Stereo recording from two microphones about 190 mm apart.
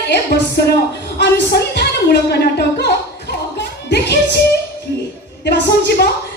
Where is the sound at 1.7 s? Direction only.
60° left (ahead or behind).